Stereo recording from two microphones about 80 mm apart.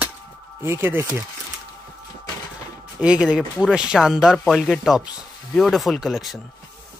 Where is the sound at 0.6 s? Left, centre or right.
Right.